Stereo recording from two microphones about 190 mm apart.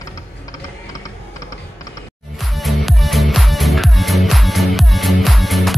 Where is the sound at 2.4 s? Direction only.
Centre (ahead or behind).